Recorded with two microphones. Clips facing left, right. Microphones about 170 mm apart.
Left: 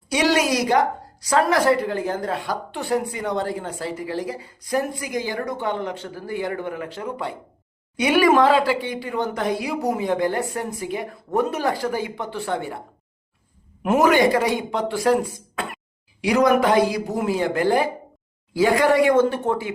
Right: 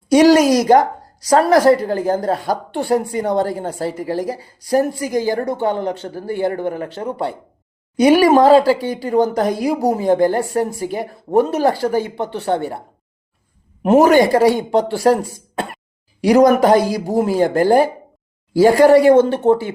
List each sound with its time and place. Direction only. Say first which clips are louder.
0.1 s speech: right 10 dB; 45° right (ahead or behind)
13.8 s speech: right 6 dB; 35° right (ahead or behind)